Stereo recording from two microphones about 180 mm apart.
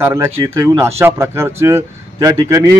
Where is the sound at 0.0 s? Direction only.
15° right (ahead or behind).